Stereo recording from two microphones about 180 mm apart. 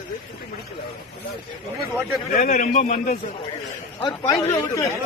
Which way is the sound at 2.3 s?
55° left (ahead or behind).